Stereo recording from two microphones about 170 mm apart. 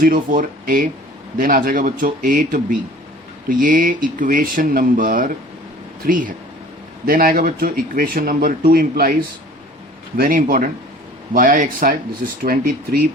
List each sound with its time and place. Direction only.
0.0 s speech: 55° right (ahead or behind)
10.2 s speech: 55° right (ahead or behind)